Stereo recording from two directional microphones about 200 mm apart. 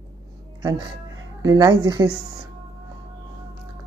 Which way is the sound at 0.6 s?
20° right (ahead or behind).